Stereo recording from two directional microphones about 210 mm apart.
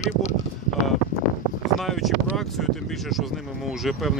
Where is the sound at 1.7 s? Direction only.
Centre (ahead or behind).